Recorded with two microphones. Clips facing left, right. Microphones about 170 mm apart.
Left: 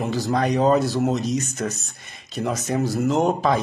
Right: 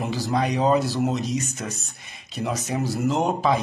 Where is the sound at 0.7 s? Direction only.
45° left (ahead or behind).